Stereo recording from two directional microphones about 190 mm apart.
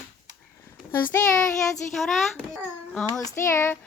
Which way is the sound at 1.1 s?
15° left (ahead or behind).